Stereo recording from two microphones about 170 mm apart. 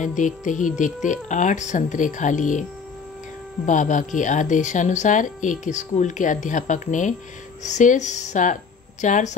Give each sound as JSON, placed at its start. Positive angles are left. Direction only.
{"t": 0.0, "sound": "speech", "side_deg": 45}
{"t": 3.6, "sound": "speech", "side_deg": 50}